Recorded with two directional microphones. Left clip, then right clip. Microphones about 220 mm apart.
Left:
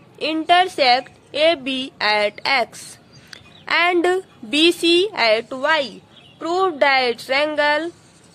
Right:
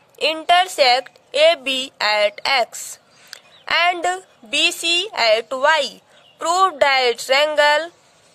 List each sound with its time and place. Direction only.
0.2 s a woman's voice: 35° right (ahead or behind)